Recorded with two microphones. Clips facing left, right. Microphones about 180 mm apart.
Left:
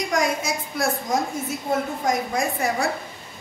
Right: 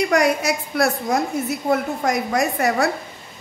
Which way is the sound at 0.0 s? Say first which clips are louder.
Right 5 dB; 65° right (ahead or behind).